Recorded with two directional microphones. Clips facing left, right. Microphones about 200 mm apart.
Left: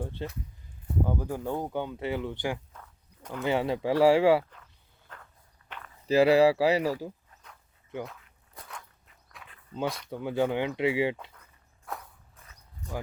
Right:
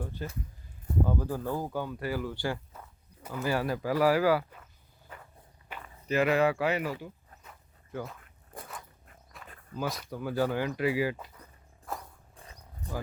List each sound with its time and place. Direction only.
0.0 s speech: 25° left (ahead or behind)
2.7 s walk: 10° right (ahead or behind)
3.4 s speech: 20° left (ahead or behind)
5.0 s walk: 10° right (ahead or behind)
6.1 s speech: 30° left (ahead or behind)
8.5 s a sound: 50° right (ahead or behind)
9.4 s a sound: centre (ahead or behind)
10.1 s speech: 20° left (ahead or behind)
11.9 s a sound: centre (ahead or behind)